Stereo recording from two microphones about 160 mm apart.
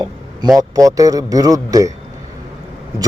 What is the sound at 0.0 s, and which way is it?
A man's voice, 25° right (ahead or behind).